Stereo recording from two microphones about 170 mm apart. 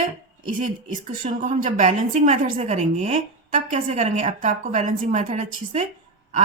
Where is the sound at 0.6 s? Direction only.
50° right (ahead or behind).